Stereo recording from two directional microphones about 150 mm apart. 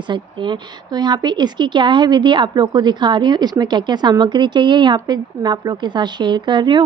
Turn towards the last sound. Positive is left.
turn(degrees=-30)  # may be behind; listen again after turning